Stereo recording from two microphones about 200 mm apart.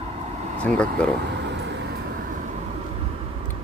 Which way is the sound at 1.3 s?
60° right (ahead or behind).